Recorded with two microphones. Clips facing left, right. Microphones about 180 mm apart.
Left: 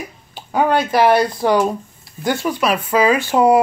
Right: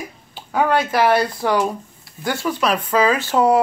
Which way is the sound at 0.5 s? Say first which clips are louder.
Left 2 dB; 20° left (ahead or behind).